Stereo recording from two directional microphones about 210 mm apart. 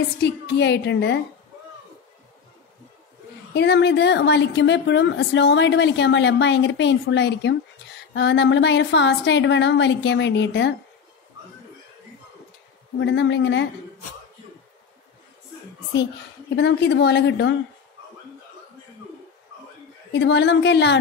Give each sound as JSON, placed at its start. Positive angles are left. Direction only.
{"t": 0.2, "sound": "a woman's voice", "side_deg": 55}
{"t": 3.5, "sound": "a woman's voice", "side_deg": 55}
{"t": 13.0, "sound": "a woman's voice", "side_deg": 55}
{"t": 16.5, "sound": "a woman's voice", "side_deg": 55}
{"t": 20.1, "sound": "a woman's voice", "side_deg": 55}